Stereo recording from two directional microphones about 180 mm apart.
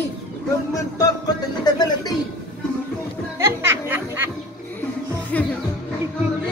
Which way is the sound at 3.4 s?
15° right (ahead or behind).